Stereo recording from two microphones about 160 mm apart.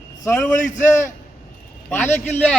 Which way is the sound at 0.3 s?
5° left (ahead or behind).